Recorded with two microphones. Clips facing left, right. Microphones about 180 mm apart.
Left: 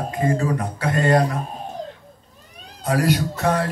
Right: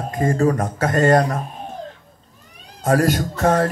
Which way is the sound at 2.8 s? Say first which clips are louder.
Right 3 dB; 45° right (ahead or behind).